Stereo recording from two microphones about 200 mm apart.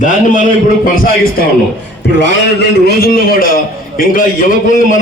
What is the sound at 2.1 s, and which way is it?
A man's voice, 55° left (ahead or behind).